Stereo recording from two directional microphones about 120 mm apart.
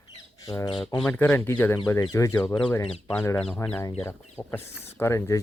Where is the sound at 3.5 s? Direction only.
10° left (ahead or behind).